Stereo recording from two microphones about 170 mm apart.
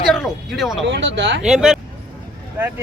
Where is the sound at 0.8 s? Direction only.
90° right.